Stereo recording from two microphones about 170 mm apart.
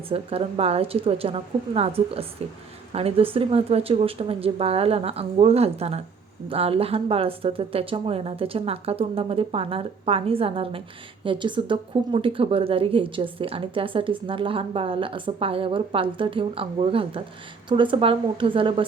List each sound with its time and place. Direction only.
0.1 s speech: 35° right (ahead or behind)